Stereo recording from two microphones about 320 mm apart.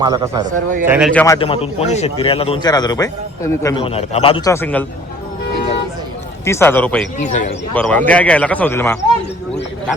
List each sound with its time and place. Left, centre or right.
0.0 s speech: centre
0.5 s speech: right
0.9 s a man's voice: centre
6.4 s a man's voice: centre
7.2 s speech: left
7.7 s speech: centre